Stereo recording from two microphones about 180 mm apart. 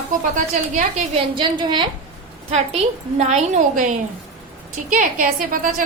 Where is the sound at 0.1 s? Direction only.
45° right (ahead or behind).